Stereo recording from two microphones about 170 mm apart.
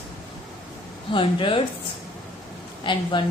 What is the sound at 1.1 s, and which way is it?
Speech, 30° left (ahead or behind).